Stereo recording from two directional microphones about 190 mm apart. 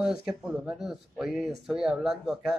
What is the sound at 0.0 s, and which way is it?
Speech, 5° right (ahead or behind).